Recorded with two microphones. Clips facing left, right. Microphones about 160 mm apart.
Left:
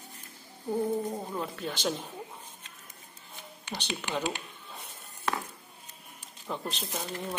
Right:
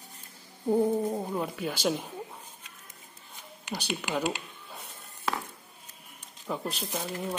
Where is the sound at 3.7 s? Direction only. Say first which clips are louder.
Right 2 dB; 10° right (ahead or behind).